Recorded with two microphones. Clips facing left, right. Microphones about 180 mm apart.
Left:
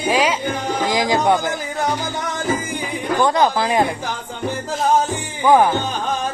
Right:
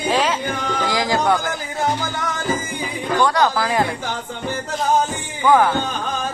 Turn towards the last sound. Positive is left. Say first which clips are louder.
# left 2 dB
turn(degrees=20)  # may be behind; listen again after turning